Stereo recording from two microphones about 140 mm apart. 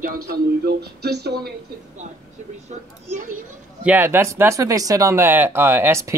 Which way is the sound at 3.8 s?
10° right (ahead or behind).